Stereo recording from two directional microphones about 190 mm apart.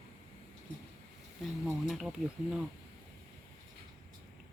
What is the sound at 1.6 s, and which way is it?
Speech, centre (ahead or behind).